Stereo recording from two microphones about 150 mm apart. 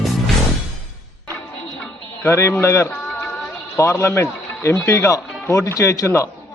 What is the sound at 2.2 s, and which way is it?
A man's voice, 15° left (ahead or behind).